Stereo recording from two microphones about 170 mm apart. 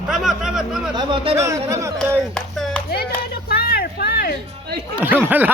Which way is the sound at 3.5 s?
65° left (ahead or behind).